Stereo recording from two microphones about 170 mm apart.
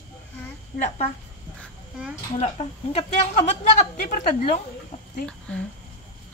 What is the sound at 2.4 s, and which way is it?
Speech, 40° left (ahead or behind).